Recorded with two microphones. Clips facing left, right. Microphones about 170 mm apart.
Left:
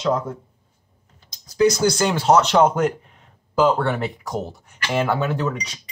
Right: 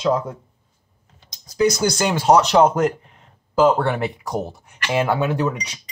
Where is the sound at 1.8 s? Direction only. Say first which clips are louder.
Left 1 dB; 15° right (ahead or behind).